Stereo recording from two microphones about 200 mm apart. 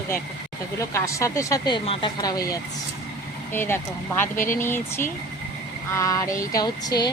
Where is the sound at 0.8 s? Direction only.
15° left (ahead or behind).